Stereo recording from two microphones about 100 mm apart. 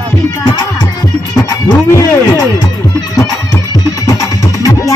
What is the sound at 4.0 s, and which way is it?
Music, 35° left (ahead or behind).